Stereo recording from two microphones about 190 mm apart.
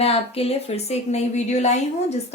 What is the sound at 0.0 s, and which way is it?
Speech, 30° left (ahead or behind).